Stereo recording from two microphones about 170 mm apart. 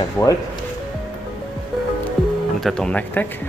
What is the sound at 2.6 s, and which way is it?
Speech, 5° left (ahead or behind).